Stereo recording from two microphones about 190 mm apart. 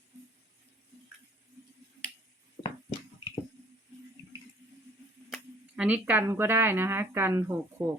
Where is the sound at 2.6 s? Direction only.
20° left (ahead or behind).